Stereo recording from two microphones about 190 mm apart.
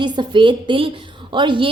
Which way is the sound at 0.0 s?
25° right (ahead or behind).